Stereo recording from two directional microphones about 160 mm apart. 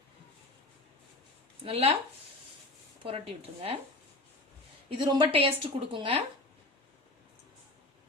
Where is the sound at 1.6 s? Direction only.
40° right (ahead or behind).